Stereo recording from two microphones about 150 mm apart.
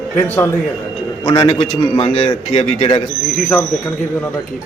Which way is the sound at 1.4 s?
40° left (ahead or behind).